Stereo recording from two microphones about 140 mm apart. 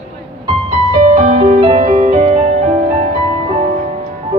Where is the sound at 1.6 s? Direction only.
45° right (ahead or behind).